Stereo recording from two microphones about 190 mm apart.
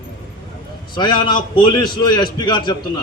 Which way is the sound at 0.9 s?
25° left (ahead or behind).